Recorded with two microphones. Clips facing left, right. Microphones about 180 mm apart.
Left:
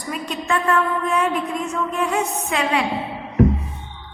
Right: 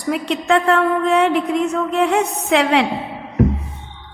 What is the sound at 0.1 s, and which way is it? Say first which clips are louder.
A woman's voice: right 7 dB; 75° right (ahead or behind).